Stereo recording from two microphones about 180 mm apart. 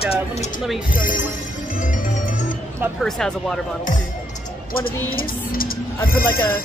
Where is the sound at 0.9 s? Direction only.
50° left (ahead or behind).